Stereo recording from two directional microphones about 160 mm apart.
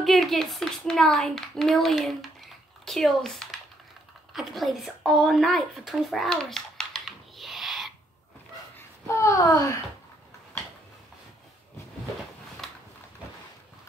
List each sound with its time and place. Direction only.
0.0 s a child's voice: centre (ahead or behind)
8.7 s a child's voice: 15° left (ahead or behind)